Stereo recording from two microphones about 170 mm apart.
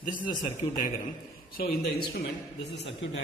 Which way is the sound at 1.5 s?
65° left (ahead or behind).